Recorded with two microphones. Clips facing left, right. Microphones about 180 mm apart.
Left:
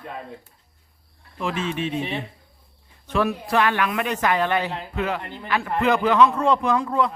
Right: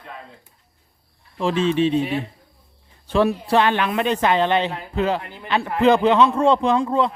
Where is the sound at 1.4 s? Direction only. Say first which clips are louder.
Right 7 dB; 30° right (ahead or behind).